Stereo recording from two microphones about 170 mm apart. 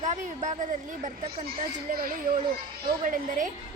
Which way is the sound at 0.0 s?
45° right (ahead or behind).